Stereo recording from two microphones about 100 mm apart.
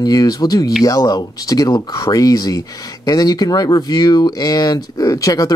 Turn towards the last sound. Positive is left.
turn(degrees=35)  # may be behind; listen again after turning